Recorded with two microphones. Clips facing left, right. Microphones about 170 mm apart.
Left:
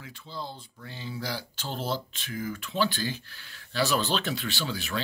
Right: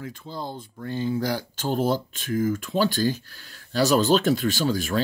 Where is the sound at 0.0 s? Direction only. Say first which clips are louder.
Right 6 dB; 45° right (ahead or behind).